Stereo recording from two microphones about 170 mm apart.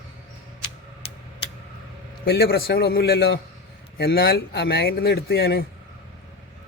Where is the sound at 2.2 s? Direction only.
70° left (ahead or behind).